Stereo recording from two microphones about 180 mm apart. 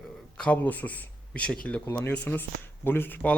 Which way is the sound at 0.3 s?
5° left (ahead or behind).